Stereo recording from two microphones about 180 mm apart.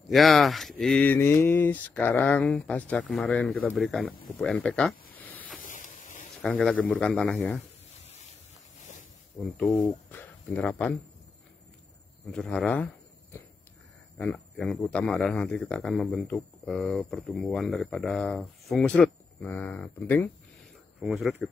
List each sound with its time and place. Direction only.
0.1 s speech: centre (ahead or behind)
4.4 s a sound: 5° left (ahead or behind)
5.7 s a sound: 45° left (ahead or behind)
6.4 s speech: 5° left (ahead or behind)
9.4 s speech: 5° left (ahead or behind)
12.3 s speech: 5° left (ahead or behind)